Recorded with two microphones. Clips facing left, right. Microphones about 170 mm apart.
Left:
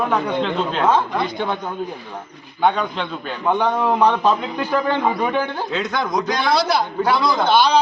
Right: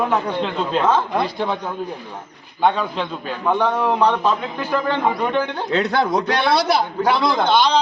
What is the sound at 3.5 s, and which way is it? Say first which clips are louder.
A man's voice: even; 15° left (ahead or behind).